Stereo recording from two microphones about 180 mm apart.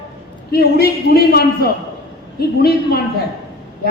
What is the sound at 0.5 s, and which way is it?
A man's voice, 60° left (ahead or behind).